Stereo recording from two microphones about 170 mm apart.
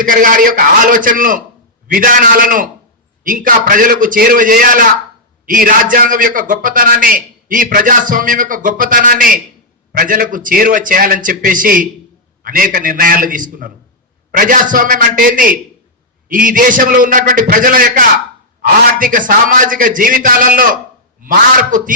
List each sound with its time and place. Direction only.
0.0 s a man's voice: 55° right (ahead or behind)